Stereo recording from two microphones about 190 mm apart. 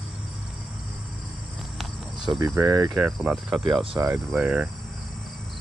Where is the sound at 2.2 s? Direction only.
20° right (ahead or behind).